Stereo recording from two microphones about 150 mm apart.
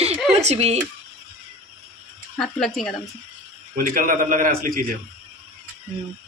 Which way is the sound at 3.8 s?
65° right (ahead or behind).